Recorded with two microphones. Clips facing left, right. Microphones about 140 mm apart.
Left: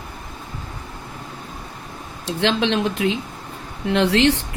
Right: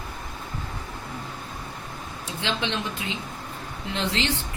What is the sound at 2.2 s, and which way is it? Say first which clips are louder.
Speech: left 9 dB; 80° left.